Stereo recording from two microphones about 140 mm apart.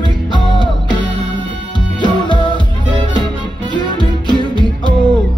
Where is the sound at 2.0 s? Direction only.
35° left (ahead or behind).